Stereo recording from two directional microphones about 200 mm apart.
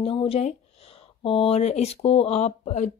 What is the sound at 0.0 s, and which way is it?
Speech, 25° left (ahead or behind).